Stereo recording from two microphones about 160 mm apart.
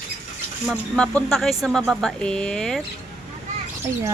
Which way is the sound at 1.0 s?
5° left (ahead or behind).